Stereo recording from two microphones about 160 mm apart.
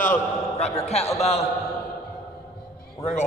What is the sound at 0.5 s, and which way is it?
Speech, 40° left (ahead or behind).